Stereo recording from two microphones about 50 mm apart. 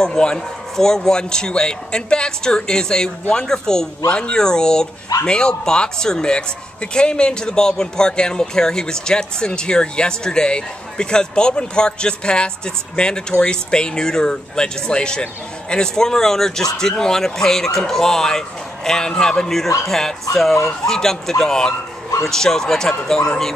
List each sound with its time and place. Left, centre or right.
0.0 s a man's voice: centre